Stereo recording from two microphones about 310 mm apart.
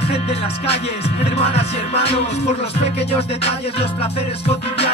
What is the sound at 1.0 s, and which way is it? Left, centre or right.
Music, centre.